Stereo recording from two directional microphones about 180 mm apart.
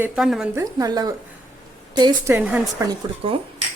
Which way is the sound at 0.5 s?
20° right (ahead or behind).